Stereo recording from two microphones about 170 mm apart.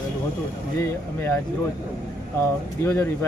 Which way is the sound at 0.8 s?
15° left (ahead or behind).